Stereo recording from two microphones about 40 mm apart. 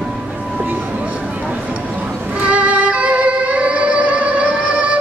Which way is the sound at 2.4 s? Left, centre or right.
Right.